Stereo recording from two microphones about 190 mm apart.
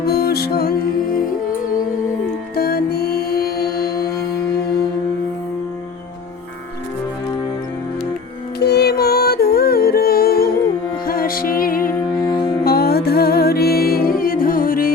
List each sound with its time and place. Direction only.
0.0 s music: 55° left (ahead or behind)
2.6 s music: 55° left (ahead or behind)
8.5 s music: 60° left (ahead or behind)